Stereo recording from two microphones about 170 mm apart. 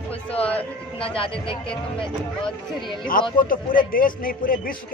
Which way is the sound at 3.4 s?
55° left (ahead or behind).